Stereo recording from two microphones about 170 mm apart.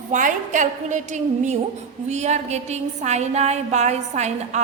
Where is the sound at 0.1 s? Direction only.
50° right (ahead or behind).